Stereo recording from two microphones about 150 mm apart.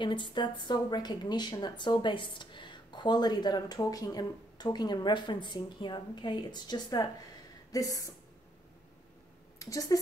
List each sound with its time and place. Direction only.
0.0 s a woman's voice: 30° left (ahead or behind)
7.7 s a sound: 25° left (ahead or behind)
9.6 s a woman's voice: 20° left (ahead or behind)